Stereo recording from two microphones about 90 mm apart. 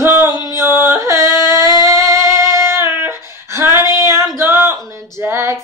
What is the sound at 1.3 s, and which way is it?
Singing, 40° right (ahead or behind).